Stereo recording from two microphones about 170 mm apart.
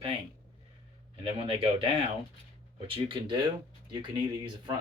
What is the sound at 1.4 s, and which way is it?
Speech, 35° right (ahead or behind).